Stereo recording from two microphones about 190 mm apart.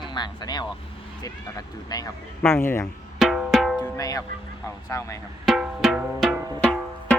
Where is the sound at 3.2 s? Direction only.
Centre (ahead or behind).